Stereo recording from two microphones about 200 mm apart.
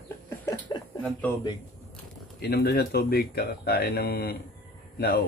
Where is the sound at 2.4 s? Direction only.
55° left (ahead or behind).